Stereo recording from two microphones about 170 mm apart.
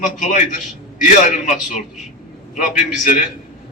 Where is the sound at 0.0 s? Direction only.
50° left (ahead or behind).